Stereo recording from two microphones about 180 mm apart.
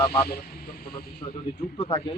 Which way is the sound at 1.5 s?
55° left (ahead or behind).